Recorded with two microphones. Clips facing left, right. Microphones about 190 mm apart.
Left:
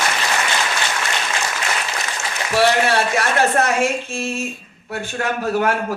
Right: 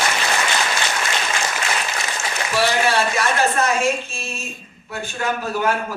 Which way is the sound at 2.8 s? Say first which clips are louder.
Left 1 dB; 65° left (ahead or behind).